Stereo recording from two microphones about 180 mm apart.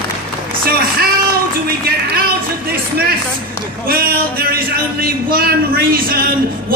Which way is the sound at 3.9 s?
55° right (ahead or behind).